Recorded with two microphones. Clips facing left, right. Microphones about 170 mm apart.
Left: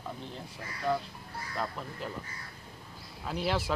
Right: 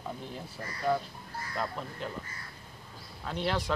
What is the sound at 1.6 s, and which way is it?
Speech, centre (ahead or behind).